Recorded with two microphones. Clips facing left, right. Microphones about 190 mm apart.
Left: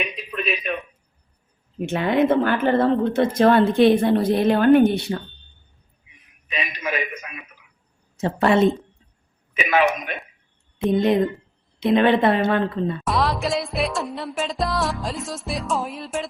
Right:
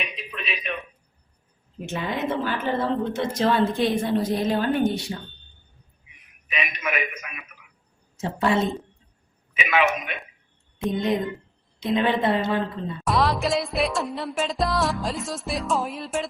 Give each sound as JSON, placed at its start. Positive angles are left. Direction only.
{"t": 0.3, "sound": "a sound", "side_deg": 45}
{"t": 1.9, "sound": "speech", "side_deg": 60}
{"t": 6.5, "sound": "a man's voice", "side_deg": 30}
{"t": 8.1, "sound": "a woman's voice", "side_deg": 60}
{"t": 9.6, "sound": "a man's voice", "side_deg": 40}
{"t": 11.8, "sound": "speech", "side_deg": 65}
{"t": 13.1, "sound": "music", "side_deg": 0}